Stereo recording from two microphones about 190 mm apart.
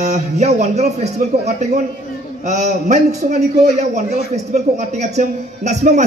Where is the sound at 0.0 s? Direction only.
35° right (ahead or behind).